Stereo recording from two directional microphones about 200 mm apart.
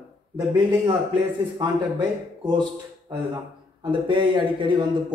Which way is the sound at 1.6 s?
20° right (ahead or behind).